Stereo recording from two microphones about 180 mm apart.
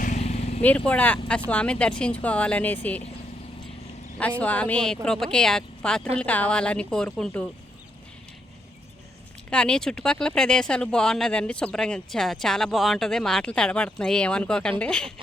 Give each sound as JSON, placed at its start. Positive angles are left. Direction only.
{"t": 0.0, "sound": "vehicle", "side_deg": 40}
{"t": 0.9, "sound": "speech", "side_deg": 10}
{"t": 4.2, "sound": "speech", "side_deg": 10}
{"t": 9.5, "sound": "speech", "side_deg": 5}